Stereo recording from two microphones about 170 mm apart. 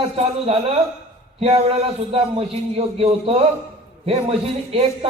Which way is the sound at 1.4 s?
35° right (ahead or behind).